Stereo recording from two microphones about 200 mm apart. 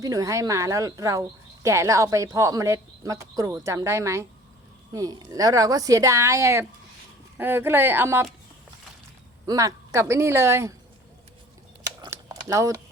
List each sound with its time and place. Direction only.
0.0 s speech: 15° right (ahead or behind)
9.5 s speech: 15° right (ahead or behind)
12.0 s a sound: 20° right (ahead or behind)